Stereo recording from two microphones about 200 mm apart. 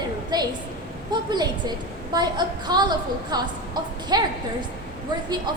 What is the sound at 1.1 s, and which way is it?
A woman's voice, 20° right (ahead or behind).